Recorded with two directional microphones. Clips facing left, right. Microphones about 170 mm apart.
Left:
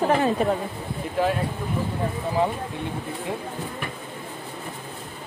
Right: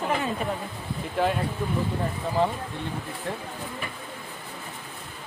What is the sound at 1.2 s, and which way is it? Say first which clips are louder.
Speech: left 2 dB; 5° left (ahead or behind).